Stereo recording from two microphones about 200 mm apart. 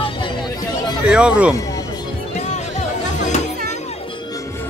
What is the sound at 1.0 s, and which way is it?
Speech, 5° right (ahead or behind).